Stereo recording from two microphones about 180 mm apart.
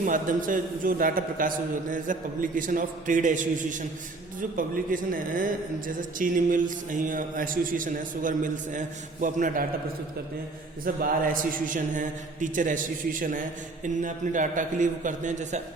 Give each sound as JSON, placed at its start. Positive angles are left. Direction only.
{"t": 0.0, "sound": "a man's voice", "side_deg": -45}
{"t": 10.8, "sound": "a man's voice", "side_deg": -50}